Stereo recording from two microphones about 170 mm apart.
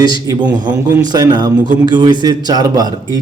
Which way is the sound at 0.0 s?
25° right (ahead or behind).